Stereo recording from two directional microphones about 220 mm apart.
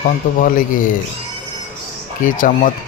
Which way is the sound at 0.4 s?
40° left (ahead or behind).